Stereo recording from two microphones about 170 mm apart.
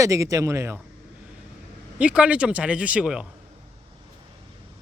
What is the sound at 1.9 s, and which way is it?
Speech, 5° right (ahead or behind).